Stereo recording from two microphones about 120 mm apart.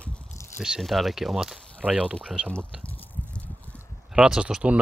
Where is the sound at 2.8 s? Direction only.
10° left (ahead or behind).